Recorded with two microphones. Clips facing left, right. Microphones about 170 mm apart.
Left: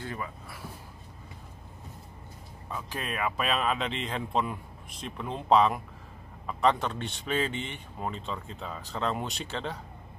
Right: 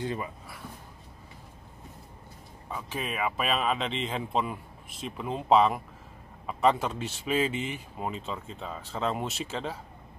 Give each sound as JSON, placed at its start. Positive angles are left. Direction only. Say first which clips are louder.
{"t": 0.0, "sound": "speech", "louder": "right 4 dB", "side_deg": -20}
{"t": 2.7, "sound": "speech", "louder": "right 1 dB", "side_deg": 0}